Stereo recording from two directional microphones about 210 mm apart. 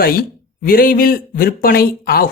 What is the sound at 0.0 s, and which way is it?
Speech, 45° left (ahead or behind).